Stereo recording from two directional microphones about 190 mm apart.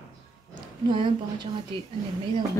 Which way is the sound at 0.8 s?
25° right (ahead or behind).